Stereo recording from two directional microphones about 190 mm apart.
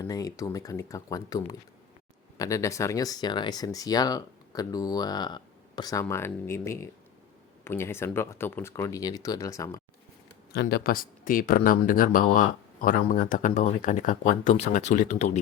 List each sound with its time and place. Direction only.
0.0 s speech: 20° left (ahead or behind)
10.5 s speech: 55° left (ahead or behind); by 15.4 s 40° left (ahead or behind)